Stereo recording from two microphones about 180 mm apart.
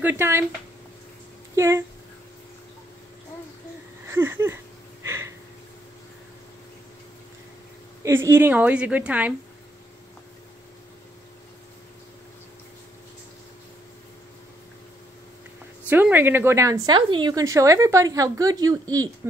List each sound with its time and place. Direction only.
0.0 s speech: 10° right (ahead or behind)
1.5 s speech: 15° right (ahead or behind)
4.1 s speech: 15° right (ahead or behind)
5.0 s a sound: 15° right (ahead or behind)
8.0 s speech: 15° right (ahead or behind)
15.9 s speech: 10° right (ahead or behind)